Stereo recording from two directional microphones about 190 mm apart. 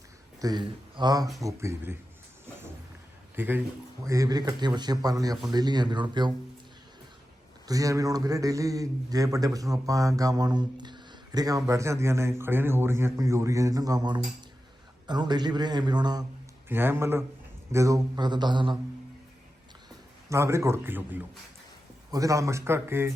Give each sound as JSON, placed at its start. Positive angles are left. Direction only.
{"t": 0.4, "sound": "a man's voice", "side_deg": -25}
{"t": 3.3, "sound": "a man's voice", "side_deg": -10}
{"t": 7.7, "sound": "a man's voice", "side_deg": -20}
{"t": 16.6, "sound": "a man's voice", "side_deg": -10}
{"t": 20.3, "sound": "a man's voice", "side_deg": -15}